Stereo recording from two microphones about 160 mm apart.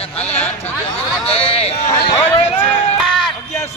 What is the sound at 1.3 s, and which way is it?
Speech, 40° left (ahead or behind).